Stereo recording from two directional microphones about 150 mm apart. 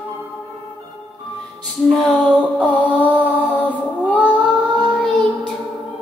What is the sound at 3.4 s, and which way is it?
Music, 10° left (ahead or behind).